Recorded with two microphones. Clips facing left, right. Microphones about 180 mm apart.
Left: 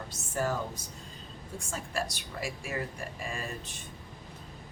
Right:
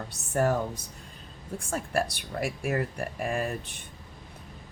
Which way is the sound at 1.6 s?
55° right (ahead or behind).